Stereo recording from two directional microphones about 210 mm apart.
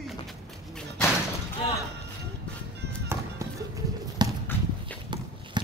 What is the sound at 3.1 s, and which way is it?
Music, 15° right (ahead or behind).